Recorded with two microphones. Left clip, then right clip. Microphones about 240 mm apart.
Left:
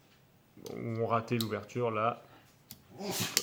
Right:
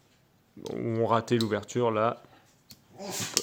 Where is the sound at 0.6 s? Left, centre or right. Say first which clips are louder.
Right 7 dB; right.